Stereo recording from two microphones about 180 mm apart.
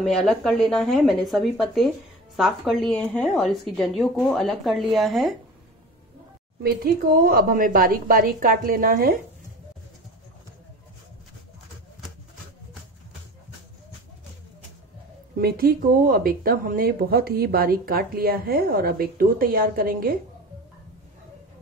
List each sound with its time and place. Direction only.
0.0 s a woman's voice: centre (ahead or behind)
6.6 s a woman's voice: 55° right (ahead or behind)
15.3 s speech: 55° right (ahead or behind)